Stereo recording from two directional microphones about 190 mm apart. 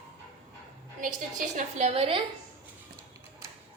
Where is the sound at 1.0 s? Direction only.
40° right (ahead or behind).